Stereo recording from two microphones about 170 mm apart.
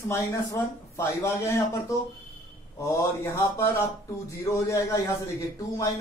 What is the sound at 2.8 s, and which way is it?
Speech, 15° left (ahead or behind).